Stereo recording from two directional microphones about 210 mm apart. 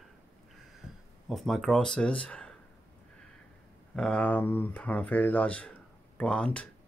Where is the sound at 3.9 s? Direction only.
5° left (ahead or behind).